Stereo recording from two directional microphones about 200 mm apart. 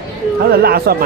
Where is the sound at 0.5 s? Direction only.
50° right (ahead or behind).